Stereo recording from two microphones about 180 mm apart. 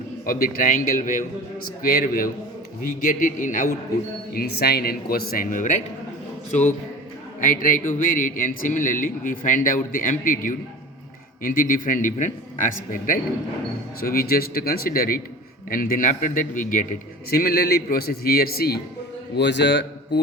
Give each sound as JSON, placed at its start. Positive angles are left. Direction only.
{"t": 0.3, "sound": "a man's voice", "side_deg": 50}
{"t": 4.4, "sound": "a man's voice", "side_deg": 60}
{"t": 7.4, "sound": "a man's voice", "side_deg": 45}
{"t": 19.4, "sound": "a man's voice", "side_deg": 75}